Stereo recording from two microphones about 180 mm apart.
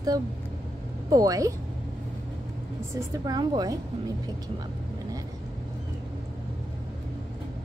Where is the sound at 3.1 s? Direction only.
20° right (ahead or behind).